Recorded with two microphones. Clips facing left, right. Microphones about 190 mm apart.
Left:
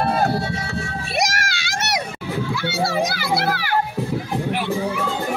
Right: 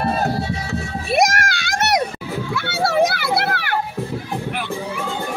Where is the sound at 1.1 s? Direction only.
55° right (ahead or behind).